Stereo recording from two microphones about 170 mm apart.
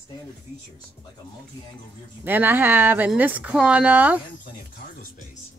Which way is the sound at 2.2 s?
10° right (ahead or behind).